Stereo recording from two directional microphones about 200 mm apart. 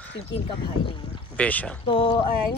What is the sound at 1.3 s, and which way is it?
Speech, 5° left (ahead or behind).